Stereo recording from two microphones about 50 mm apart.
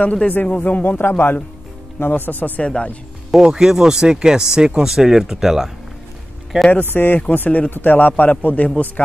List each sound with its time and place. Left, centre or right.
0.0 s speech: left
0.8 s a man's voice: left
2.6 s speech: left
3.4 s speech: centre
6.7 s a man's voice: left